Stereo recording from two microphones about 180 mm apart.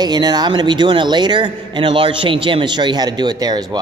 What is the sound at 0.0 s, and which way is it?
A man's voice, 25° right (ahead or behind).